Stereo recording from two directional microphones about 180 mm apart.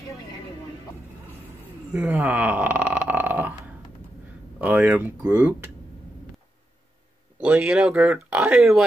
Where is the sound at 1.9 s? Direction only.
10° right (ahead or behind).